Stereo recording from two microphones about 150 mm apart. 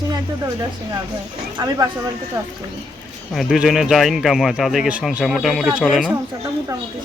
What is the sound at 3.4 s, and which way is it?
Speech, 5° right (ahead or behind).